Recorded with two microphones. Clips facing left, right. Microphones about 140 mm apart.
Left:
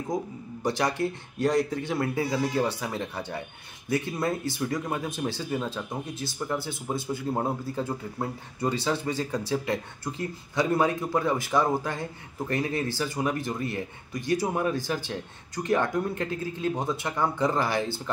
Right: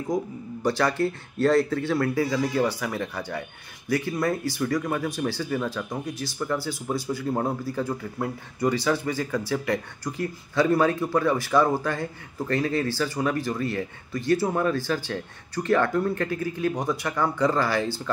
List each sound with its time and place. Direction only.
0.7 s speech: 20° left (ahead or behind)